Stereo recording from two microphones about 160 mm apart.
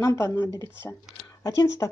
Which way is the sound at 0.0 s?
20° left (ahead or behind).